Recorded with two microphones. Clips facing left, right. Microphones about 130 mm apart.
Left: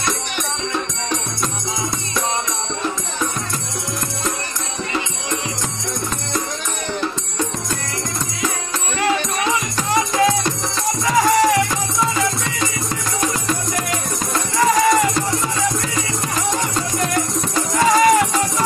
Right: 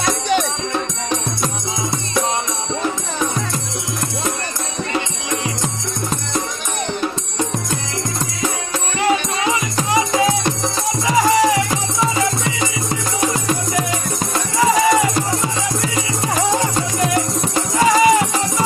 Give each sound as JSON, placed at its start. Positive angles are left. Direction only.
{"t": 9.5, "sound": "music", "side_deg": -15}
{"t": 13.2, "sound": "music", "side_deg": -25}
{"t": 14.6, "sound": "music", "side_deg": -5}
{"t": 17.7, "sound": "music", "side_deg": -5}